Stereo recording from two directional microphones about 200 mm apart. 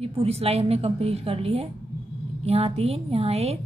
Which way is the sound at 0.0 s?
30° right (ahead or behind).